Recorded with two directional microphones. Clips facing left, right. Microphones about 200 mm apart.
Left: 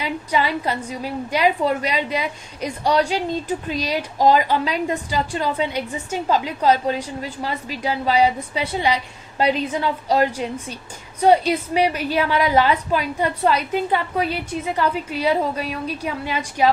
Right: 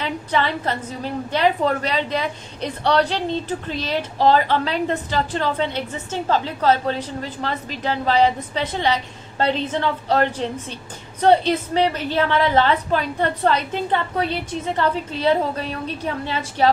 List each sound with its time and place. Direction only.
0.0 s a woman's voice: 10° left (ahead or behind)